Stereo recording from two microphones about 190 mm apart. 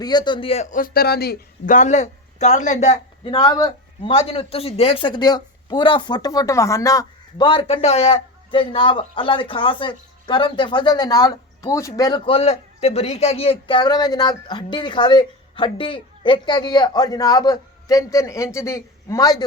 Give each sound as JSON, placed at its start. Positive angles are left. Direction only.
{"t": 0.0, "sound": "a man's voice", "side_deg": 20}
{"t": 3.3, "sound": "a man's voice", "side_deg": 20}
{"t": 4.1, "sound": "speech", "side_deg": 30}